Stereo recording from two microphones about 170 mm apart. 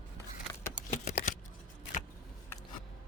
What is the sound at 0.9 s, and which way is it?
Shuffling cards, 45° left (ahead or behind).